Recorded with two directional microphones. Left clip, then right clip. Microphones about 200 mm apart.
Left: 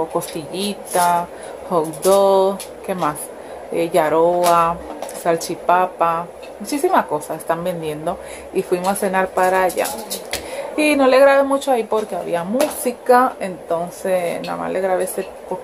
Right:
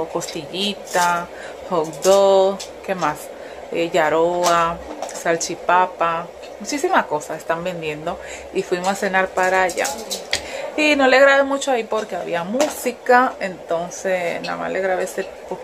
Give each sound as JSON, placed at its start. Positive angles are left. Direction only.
{"t": 0.1, "sound": "speech", "side_deg": 10}